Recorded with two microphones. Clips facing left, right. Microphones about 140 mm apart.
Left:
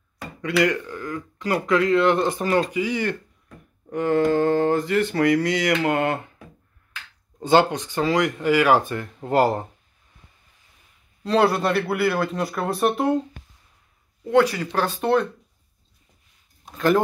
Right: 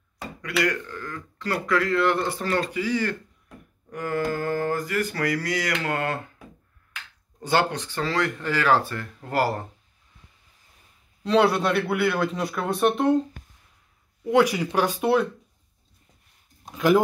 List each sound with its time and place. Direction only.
0.4 s speech: 25° left (ahead or behind)
7.3 s speech: 20° left (ahead or behind)
11.2 s speech: centre (ahead or behind)
14.2 s speech: 15° right (ahead or behind)
16.7 s speech: 10° right (ahead or behind)